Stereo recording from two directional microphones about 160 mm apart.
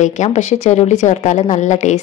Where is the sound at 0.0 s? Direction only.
45° left (ahead or behind).